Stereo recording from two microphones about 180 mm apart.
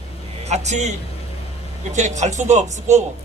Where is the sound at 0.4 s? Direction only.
40° right (ahead or behind).